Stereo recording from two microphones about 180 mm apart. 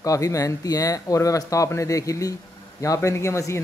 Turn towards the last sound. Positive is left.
turn(degrees=15)  # may be behind; listen again after turning